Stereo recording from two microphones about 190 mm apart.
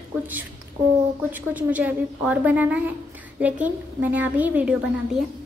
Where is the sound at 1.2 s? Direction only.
10° right (ahead or behind).